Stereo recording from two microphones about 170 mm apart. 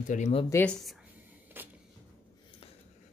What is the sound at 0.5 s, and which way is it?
Speech, 5° left (ahead or behind).